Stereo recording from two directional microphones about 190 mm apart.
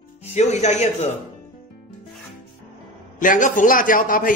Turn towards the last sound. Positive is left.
turn(degrees=45)  # may be behind; listen again after turning